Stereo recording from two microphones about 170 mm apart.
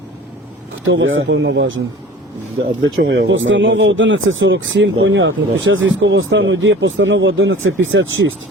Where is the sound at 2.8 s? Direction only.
90° right.